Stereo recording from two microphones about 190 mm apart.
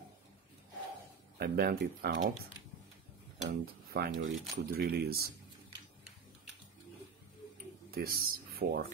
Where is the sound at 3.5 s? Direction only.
55° right (ahead or behind).